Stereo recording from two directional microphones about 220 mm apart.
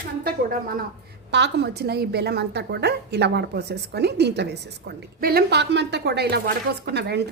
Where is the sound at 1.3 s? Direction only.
50° right (ahead or behind).